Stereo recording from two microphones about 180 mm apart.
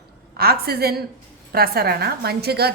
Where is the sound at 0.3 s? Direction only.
60° right (ahead or behind).